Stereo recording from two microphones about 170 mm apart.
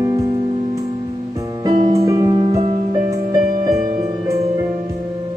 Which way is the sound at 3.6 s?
20° right (ahead or behind).